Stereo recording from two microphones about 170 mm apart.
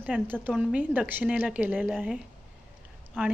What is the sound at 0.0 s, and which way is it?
A woman's voice, 10° right (ahead or behind).